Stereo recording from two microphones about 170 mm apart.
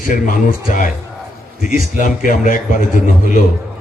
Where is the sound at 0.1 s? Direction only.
50° left (ahead or behind).